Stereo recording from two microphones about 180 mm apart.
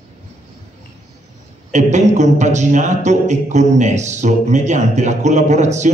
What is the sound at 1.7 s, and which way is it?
A man's voice, 40° right (ahead or behind).